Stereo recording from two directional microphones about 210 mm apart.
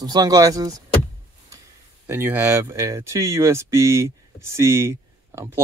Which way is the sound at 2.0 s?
10° right (ahead or behind).